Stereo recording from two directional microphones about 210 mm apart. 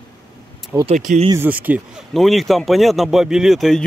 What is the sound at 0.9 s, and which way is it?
Speech, 35° right (ahead or behind).